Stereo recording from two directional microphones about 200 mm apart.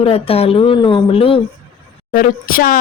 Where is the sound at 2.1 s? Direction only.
45° left (ahead or behind).